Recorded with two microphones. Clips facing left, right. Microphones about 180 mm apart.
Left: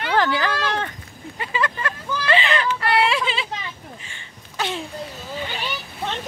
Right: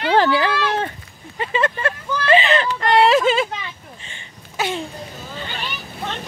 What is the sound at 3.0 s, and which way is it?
Speech, 45° right (ahead or behind).